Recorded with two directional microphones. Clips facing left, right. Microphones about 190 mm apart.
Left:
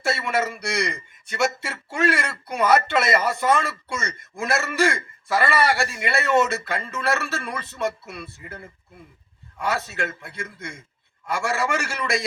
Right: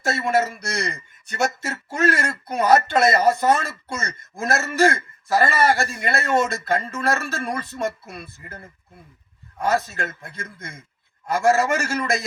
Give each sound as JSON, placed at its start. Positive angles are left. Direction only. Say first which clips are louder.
{"t": 0.1, "sound": "speech", "louder": "right 3 dB", "side_deg": -40}
{"t": 9.6, "sound": "speech", "louder": "right 3 dB", "side_deg": -40}